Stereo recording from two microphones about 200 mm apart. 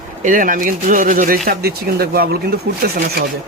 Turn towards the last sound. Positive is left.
turn(degrees=-50)  # may be behind; listen again after turning